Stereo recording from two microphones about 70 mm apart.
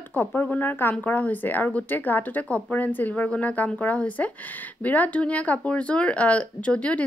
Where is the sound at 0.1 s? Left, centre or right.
Left.